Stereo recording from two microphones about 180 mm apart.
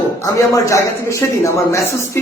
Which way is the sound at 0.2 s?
20° left (ahead or behind).